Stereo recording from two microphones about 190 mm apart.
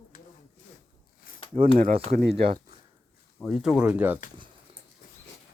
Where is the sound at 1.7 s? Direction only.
50° right (ahead or behind).